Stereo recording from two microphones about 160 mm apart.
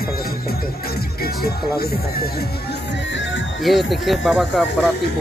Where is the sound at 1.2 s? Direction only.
75° left (ahead or behind).